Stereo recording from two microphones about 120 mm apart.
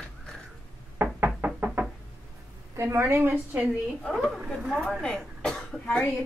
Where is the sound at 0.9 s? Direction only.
15° right (ahead or behind).